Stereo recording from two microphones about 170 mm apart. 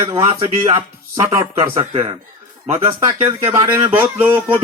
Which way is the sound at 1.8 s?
30° right (ahead or behind).